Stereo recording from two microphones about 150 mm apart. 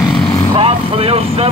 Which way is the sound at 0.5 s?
40° right (ahead or behind).